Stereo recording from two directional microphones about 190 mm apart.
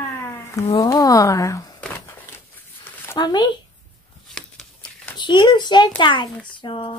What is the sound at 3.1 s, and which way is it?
Speech, 25° left (ahead or behind).